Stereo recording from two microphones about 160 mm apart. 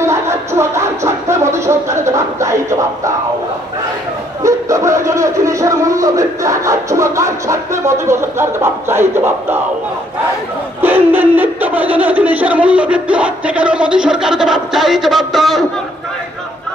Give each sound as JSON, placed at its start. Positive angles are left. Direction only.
{"t": 0.0, "sound": "music", "side_deg": -15}
{"t": 4.4, "sound": "speech", "side_deg": -20}
{"t": 10.8, "sound": "speech", "side_deg": -10}